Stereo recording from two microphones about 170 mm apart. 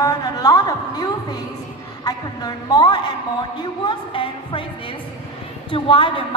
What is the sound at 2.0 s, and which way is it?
A woman's voice, 25° left (ahead or behind).